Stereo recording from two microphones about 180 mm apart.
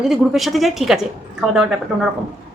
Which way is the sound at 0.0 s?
Centre (ahead or behind).